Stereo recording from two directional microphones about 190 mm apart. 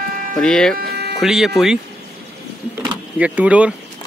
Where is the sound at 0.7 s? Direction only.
55° right (ahead or behind).